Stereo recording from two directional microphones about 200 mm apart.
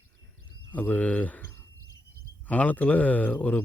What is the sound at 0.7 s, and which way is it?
Speech, 5° left (ahead or behind).